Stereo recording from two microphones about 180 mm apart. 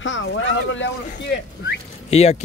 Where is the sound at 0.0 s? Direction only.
90° left.